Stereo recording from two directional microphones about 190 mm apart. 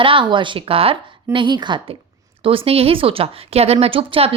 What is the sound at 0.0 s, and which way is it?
Speech, 25° right (ahead or behind).